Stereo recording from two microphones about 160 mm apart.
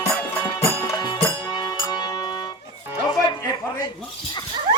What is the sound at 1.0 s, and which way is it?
Music, 30° left (ahead or behind).